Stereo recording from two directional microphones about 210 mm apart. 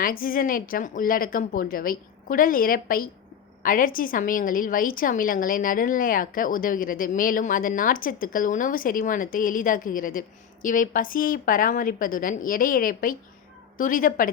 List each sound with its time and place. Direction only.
0.0 s a woman's voice: 40° left (ahead or behind)